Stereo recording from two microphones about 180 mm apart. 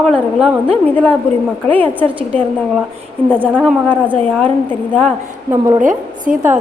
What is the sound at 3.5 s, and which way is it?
A woman's voice, 5° left (ahead or behind).